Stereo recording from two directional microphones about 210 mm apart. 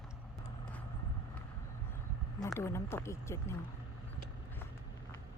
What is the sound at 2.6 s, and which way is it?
Speech, 10° left (ahead or behind).